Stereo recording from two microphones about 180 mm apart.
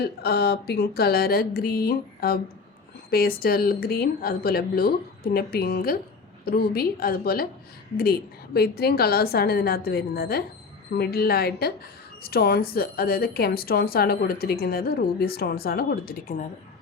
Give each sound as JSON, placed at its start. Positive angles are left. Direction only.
{"t": 0.0, "sound": "speech", "side_deg": 60}